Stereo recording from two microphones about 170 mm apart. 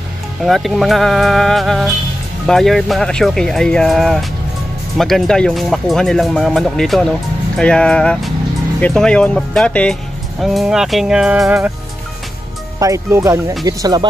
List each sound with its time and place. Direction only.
0.4 s speech: centre (ahead or behind)
12.7 s speech: 20° right (ahead or behind)